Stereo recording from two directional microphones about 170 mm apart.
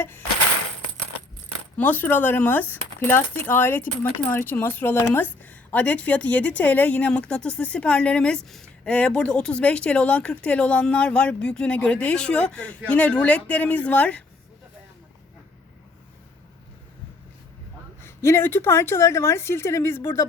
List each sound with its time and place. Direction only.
1.7 s a woman's voice: 10° left (ahead or behind)
18.0 s a woman's voice: 15° left (ahead or behind)